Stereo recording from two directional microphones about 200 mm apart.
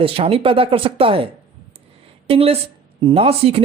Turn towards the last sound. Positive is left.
turn(degrees=-30)  # may be behind; listen again after turning